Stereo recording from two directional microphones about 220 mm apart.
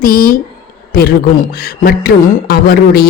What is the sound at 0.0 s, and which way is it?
Speech, 40° left (ahead or behind).